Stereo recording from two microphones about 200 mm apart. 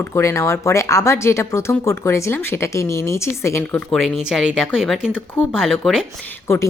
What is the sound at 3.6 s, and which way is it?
Speech, 5° left (ahead or behind).